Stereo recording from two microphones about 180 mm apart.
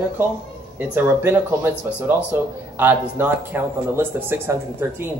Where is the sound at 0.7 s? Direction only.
10° right (ahead or behind).